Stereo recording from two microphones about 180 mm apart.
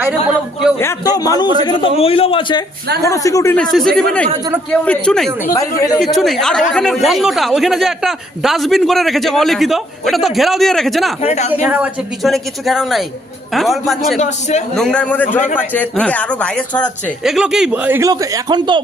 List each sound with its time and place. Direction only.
0.8 s a man's voice: 15° left (ahead or behind)
3.6 s speech: centre (ahead or behind)
11.2 s a man's voice: 35° left (ahead or behind)
11.6 s speech: 5° right (ahead or behind)
14.2 s a man's voice: 40° left (ahead or behind)
14.8 s a man's voice: 5° left (ahead or behind); by 18.8 s 25° right (ahead or behind)